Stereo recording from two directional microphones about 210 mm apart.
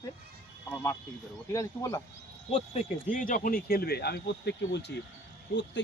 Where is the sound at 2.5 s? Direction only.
30° left (ahead or behind); by 4.9 s 55° left (ahead or behind).